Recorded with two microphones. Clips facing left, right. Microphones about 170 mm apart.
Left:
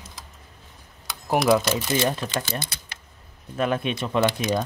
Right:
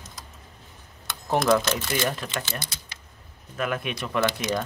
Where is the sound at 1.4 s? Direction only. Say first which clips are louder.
Left 2 dB; 10° left (ahead or behind).